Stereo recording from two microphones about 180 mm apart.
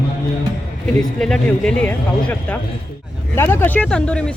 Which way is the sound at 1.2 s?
5° left (ahead or behind).